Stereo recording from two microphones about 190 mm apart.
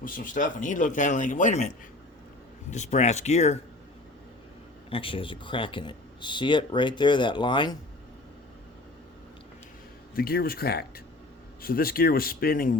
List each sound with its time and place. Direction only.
0.0 s speech: 45° left (ahead or behind)
4.9 s speech: 30° left (ahead or behind)
10.2 s speech: 55° left (ahead or behind)